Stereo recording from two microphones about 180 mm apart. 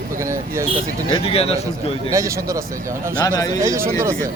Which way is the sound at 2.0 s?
15° right (ahead or behind).